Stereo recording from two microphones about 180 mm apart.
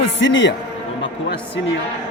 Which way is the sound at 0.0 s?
90° left.